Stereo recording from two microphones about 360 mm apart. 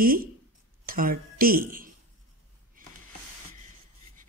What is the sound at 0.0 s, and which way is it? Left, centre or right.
Speech, right.